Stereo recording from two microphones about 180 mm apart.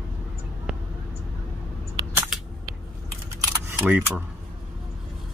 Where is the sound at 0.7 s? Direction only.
5° right (ahead or behind).